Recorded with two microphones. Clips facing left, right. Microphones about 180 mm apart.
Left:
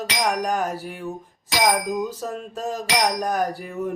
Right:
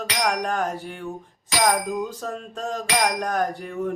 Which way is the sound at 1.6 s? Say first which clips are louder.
Left 1 dB; 15° left (ahead or behind).